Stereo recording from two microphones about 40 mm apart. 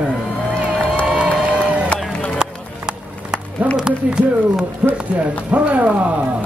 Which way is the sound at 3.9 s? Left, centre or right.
Centre.